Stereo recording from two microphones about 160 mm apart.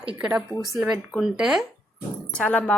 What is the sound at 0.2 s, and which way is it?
A woman's voice, 10° right (ahead or behind).